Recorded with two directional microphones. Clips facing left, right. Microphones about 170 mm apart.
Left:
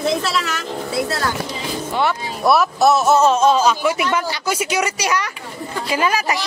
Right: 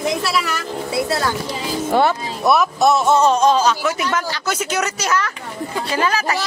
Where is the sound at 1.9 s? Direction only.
50° right (ahead or behind).